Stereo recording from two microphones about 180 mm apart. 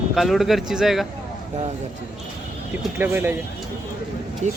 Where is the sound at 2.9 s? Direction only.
15° right (ahead or behind).